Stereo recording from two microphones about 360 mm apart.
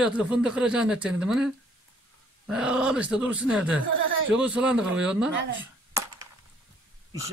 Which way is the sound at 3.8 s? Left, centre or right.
Right.